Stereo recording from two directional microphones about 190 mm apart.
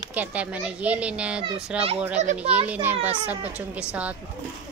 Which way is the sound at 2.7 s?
10° right (ahead or behind).